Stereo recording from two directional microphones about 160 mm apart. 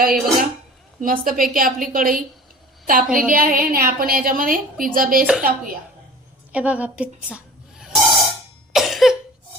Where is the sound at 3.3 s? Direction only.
60° right (ahead or behind).